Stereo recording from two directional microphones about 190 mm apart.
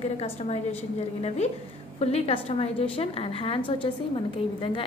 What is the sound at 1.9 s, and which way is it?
A woman's voice, 30° left (ahead or behind).